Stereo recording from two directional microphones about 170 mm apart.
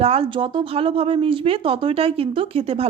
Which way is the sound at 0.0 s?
35° right (ahead or behind).